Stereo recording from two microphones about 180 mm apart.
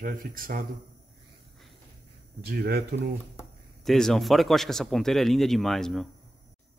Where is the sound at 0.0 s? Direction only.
50° right (ahead or behind).